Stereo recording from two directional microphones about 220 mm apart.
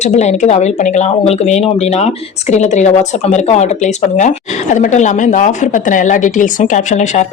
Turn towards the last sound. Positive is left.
turn(degrees=30)  # may be behind; listen again after turning